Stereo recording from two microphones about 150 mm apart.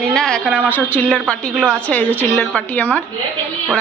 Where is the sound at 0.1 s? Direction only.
5° left (ahead or behind).